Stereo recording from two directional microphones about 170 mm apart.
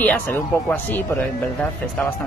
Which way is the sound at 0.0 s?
10° left (ahead or behind).